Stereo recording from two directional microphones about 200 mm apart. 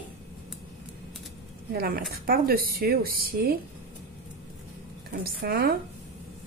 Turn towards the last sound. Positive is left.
turn(degrees=-50)  # may be behind; listen again after turning